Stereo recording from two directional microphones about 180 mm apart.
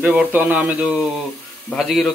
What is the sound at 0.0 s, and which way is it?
Speech, 10° right (ahead or behind).